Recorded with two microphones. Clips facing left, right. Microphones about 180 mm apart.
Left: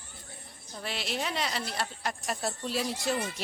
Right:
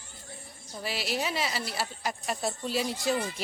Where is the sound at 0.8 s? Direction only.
5° right (ahead or behind).